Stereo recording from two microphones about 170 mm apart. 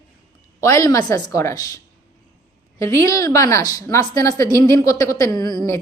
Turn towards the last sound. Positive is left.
turn(degrees=25)  # may be behind; listen again after turning